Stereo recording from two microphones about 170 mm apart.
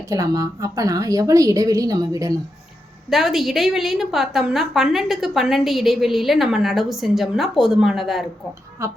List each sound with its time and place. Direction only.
0.1 s a woman's voice: 20° right (ahead or behind)
3.1 s a woman's voice: centre (ahead or behind)
8.8 s speech: 15° right (ahead or behind)